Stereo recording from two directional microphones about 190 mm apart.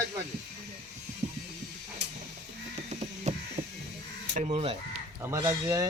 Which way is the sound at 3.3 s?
35° right (ahead or behind).